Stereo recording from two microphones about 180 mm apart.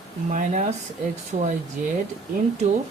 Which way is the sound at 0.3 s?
45° right (ahead or behind).